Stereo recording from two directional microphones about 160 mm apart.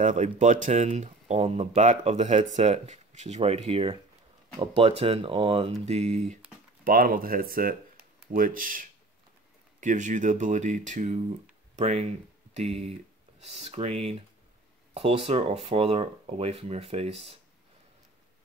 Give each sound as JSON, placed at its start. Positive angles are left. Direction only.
{"t": 0.0, "sound": "speech", "side_deg": -50}
{"t": 6.8, "sound": "speech", "side_deg": -65}